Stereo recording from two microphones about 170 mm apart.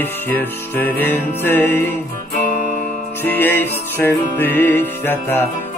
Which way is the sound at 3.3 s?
10° left (ahead or behind).